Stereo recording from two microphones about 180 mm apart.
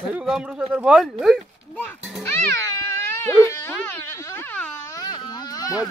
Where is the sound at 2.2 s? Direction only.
15° left (ahead or behind).